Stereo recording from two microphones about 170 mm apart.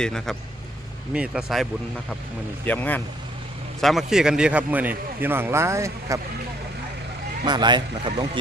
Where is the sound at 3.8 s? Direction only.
Centre (ahead or behind).